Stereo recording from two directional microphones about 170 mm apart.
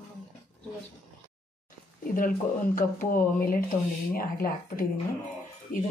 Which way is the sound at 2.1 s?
55° left (ahead or behind).